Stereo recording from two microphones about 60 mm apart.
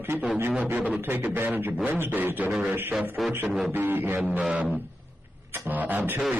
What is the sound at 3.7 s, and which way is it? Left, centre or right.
Speech, right.